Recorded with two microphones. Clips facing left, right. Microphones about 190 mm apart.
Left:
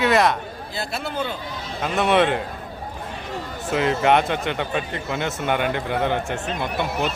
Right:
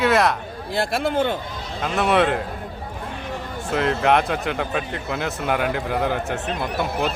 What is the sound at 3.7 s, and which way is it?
Speech, centre (ahead or behind).